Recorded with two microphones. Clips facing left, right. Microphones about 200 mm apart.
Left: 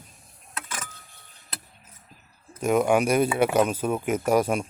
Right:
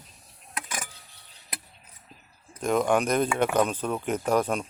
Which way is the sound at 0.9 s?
50° left (ahead or behind).